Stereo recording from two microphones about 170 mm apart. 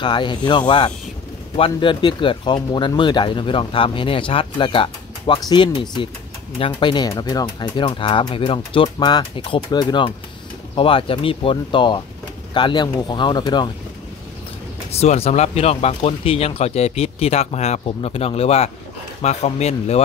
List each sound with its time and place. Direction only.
0.0 s speech: 25° left (ahead or behind)
14.9 s speech: 40° left (ahead or behind)